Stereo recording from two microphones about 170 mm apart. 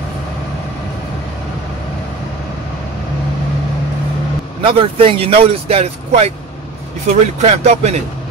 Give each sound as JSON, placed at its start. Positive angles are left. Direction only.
{"t": 4.6, "sound": "speech", "side_deg": -30}
{"t": 7.4, "sound": "speech", "side_deg": -40}